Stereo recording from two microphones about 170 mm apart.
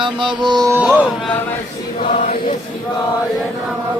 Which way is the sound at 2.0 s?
45° left (ahead or behind).